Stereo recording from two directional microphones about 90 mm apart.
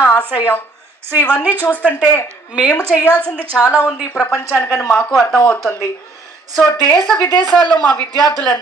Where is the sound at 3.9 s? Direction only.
35° left (ahead or behind).